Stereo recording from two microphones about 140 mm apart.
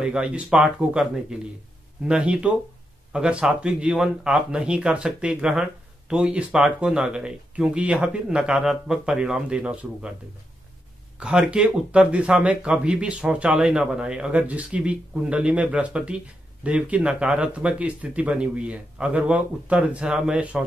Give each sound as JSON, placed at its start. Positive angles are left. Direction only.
{"t": 0.0, "sound": "speech", "side_deg": -5}
{"t": 11.1, "sound": "speech", "side_deg": -5}